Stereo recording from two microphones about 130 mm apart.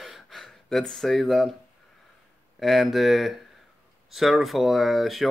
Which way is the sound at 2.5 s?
Centre (ahead or behind).